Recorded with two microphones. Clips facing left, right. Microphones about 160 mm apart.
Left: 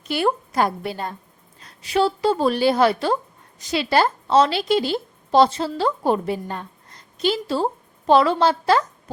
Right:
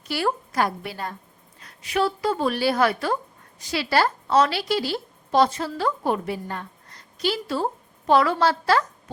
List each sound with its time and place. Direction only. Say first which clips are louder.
0.0 s a woman's voice: left 4 dB; 20° left (ahead or behind)